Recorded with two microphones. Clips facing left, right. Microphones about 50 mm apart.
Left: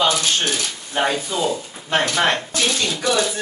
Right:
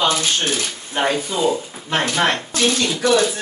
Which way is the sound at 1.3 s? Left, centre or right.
Centre.